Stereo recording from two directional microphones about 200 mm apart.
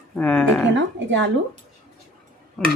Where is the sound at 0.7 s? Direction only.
65° right (ahead or behind).